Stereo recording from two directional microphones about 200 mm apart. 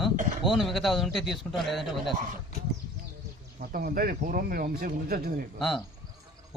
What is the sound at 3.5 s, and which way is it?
Speech, 45° right (ahead or behind).